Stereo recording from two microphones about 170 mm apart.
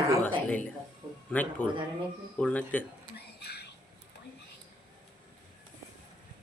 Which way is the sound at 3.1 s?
70° left (ahead or behind).